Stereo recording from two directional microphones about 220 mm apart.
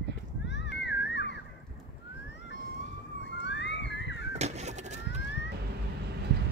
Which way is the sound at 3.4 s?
55° left (ahead or behind).